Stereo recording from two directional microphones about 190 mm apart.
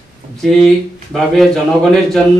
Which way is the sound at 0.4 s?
Centre (ahead or behind).